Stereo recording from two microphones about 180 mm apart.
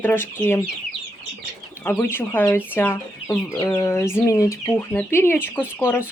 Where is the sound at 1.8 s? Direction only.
10° left (ahead or behind).